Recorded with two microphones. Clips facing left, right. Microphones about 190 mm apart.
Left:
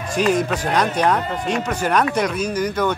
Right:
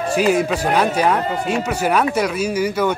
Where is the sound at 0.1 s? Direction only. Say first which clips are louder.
Right 1 dB; 10° right (ahead or behind).